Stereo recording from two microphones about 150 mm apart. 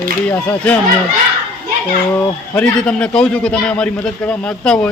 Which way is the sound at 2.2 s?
15° left (ahead or behind).